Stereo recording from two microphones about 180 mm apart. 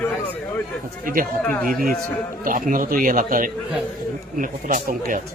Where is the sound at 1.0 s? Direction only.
50° right (ahead or behind).